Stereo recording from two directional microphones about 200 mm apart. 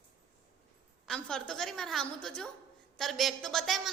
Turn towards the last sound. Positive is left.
turn(degrees=0)  # may be behind; listen again after turning